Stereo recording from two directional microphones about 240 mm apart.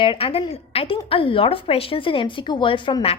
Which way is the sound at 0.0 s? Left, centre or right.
Left.